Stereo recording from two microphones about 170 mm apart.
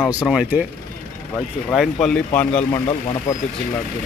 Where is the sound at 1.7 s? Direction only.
5° left (ahead or behind).